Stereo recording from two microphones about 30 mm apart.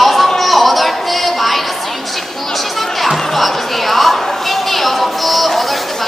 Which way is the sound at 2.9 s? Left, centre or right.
Centre.